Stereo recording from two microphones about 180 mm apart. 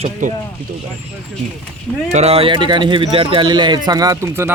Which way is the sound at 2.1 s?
35° right (ahead or behind).